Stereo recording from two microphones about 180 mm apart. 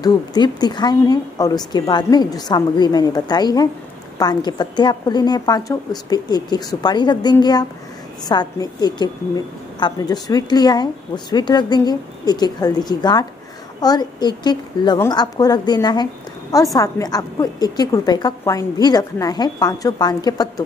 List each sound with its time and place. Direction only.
0.0 s a woman's voice: 25° left (ahead or behind)